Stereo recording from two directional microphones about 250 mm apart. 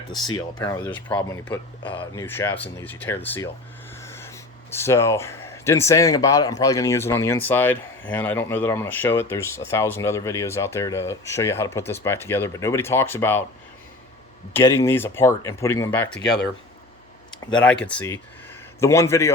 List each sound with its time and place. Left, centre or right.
0.3 s speech: centre
14.5 s speech: centre
17.3 s a sound: centre
17.6 s speech: centre